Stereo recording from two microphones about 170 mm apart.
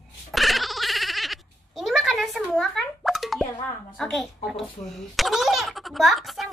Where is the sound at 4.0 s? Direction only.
Centre (ahead or behind).